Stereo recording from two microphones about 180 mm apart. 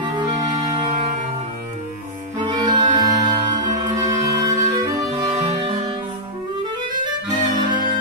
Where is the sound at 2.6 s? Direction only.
20° right (ahead or behind).